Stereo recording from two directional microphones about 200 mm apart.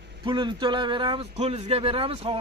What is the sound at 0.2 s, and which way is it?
A man's voice, 25° right (ahead or behind).